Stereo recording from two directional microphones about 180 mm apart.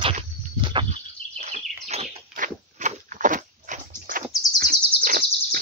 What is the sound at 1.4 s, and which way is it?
Bird, 35° right (ahead or behind).